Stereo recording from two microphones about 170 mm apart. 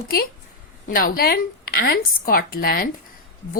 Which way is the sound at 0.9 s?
55° left (ahead or behind).